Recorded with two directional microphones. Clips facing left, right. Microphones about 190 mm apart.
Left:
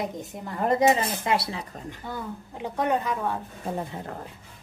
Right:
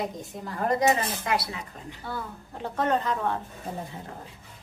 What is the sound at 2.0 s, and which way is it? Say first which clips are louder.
A woman's voice: even; 15° left (ahead or behind).